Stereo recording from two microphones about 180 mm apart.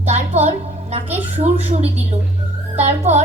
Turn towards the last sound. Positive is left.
turn(degrees=-40)  # may be behind; listen again after turning